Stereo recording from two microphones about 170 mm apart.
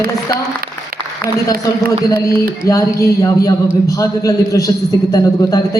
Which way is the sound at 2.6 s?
20° left (ahead or behind).